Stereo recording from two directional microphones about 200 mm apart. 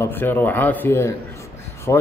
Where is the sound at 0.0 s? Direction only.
10° left (ahead or behind).